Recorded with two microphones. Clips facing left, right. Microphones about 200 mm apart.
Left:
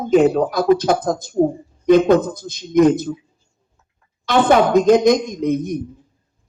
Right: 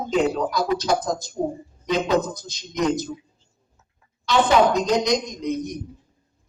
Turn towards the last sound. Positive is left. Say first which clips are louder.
# left 7 dB
turn(degrees=55)  # may be behind; listen again after turning